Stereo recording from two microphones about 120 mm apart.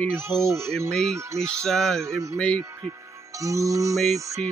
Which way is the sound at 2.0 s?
25° right (ahead or behind).